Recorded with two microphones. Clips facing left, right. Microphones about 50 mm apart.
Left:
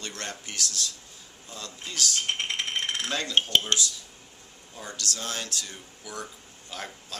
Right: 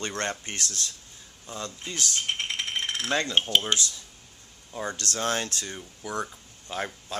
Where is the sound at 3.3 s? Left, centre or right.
Centre.